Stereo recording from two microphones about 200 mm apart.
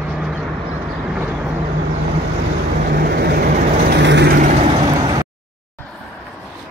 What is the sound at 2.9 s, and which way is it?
Vehicle, 50° right (ahead or behind).